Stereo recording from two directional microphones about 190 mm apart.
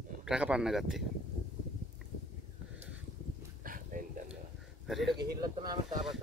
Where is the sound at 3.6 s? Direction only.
45° right (ahead or behind).